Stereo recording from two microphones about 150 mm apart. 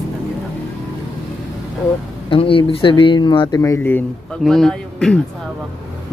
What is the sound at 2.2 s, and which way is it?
Speech, 35° left (ahead or behind).